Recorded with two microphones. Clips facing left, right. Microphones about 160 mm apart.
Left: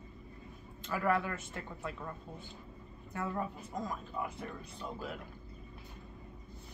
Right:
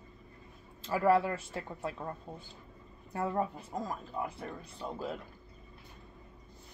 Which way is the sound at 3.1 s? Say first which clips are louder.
Right 5 dB; 30° right (ahead or behind).